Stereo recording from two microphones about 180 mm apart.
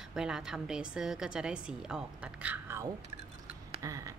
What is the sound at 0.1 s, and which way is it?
A woman's voice, 5° right (ahead or behind).